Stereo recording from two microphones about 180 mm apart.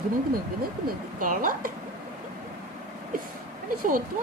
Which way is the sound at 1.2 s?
50° right (ahead or behind).